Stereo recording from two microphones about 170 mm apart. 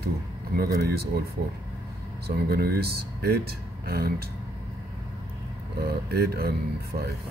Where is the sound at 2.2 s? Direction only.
65° right (ahead or behind).